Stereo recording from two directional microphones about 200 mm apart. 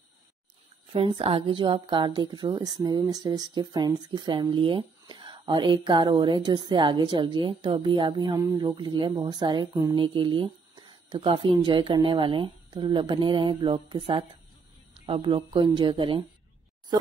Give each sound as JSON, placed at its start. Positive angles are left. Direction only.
{"t": 0.9, "sound": "a woman's voice", "side_deg": -25}